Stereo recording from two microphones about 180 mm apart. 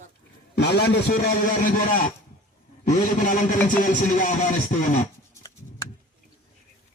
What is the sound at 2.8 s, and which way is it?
A man's voice, 45° left (ahead or behind).